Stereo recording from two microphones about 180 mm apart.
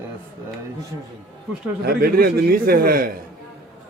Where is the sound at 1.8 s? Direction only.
55° right (ahead or behind).